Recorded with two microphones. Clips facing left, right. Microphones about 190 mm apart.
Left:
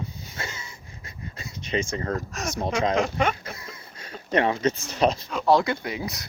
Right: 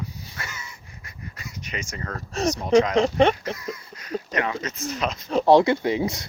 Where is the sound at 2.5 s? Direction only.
25° left (ahead or behind).